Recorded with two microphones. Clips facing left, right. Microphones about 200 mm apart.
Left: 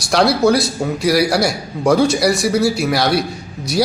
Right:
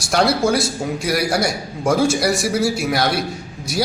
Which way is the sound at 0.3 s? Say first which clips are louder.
Left 4 dB; 65° left (ahead or behind).